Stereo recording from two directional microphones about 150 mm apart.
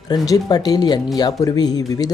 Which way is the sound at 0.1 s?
25° left (ahead or behind).